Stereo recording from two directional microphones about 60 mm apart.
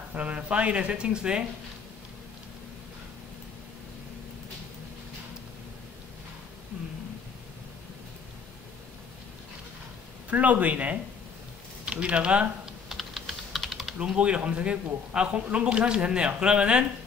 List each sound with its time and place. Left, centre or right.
0.1 s speech: right
10.3 s speech: right
12.8 s typing: centre
13.9 s speech: centre